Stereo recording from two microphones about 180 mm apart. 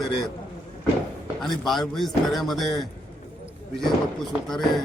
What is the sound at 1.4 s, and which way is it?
Speech, centre (ahead or behind).